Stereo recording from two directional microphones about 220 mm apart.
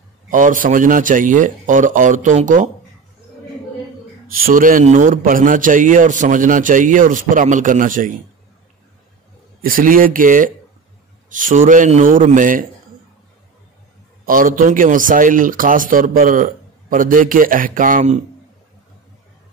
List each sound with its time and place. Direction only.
0.3 s speech: 35° right (ahead or behind)
4.3 s speech: 40° right (ahead or behind)
9.6 s speech: 40° right (ahead or behind)
14.2 s speech: 40° right (ahead or behind)